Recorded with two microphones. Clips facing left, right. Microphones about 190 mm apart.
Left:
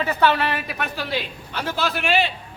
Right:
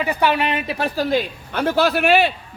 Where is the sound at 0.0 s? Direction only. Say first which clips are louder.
Right 1 dB; 15° right (ahead or behind).